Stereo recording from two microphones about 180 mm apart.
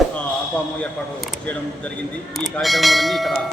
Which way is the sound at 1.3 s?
5° left (ahead or behind).